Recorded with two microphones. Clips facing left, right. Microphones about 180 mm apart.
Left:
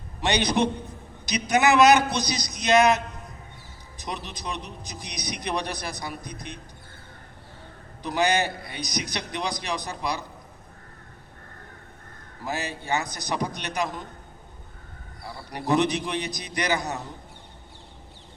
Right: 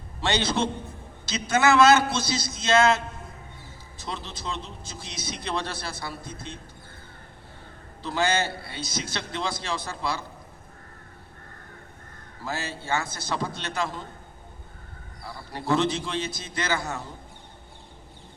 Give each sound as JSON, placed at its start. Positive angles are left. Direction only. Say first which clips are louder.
{"t": 0.2, "sound": "a man's voice", "louder": "left 2 dB", "side_deg": 15}
{"t": 8.0, "sound": "a man's voice", "louder": "left 2 dB", "side_deg": 15}
{"t": 12.5, "sound": "a man's voice", "louder": "left 1 dB", "side_deg": 15}
{"t": 15.5, "sound": "a man's voice", "louder": "left 1 dB", "side_deg": 15}